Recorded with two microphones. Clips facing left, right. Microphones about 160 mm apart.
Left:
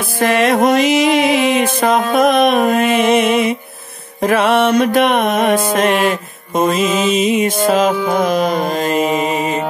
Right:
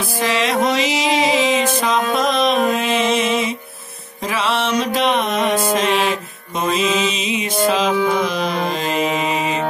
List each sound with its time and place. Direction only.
0.2 s music: 55° left (ahead or behind)